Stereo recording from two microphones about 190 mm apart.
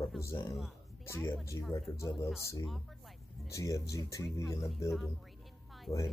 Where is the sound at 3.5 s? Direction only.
15° left (ahead or behind).